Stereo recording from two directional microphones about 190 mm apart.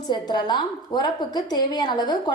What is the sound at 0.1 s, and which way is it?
A woman's voice, 20° left (ahead or behind).